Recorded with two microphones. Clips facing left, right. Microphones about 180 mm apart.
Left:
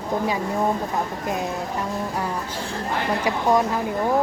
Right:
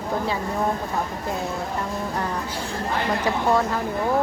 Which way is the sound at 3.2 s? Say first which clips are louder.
Left 2 dB; 15° left (ahead or behind).